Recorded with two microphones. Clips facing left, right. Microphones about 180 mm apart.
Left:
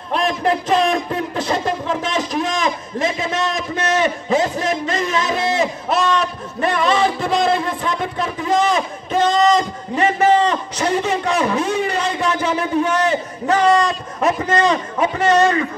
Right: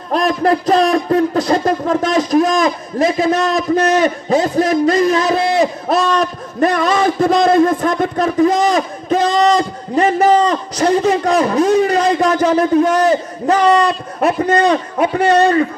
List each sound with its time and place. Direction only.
0.1 s a sound: 40° right (ahead or behind)
6.1 s a man's voice: 40° right (ahead or behind)
13.8 s a man's voice: 60° right (ahead or behind)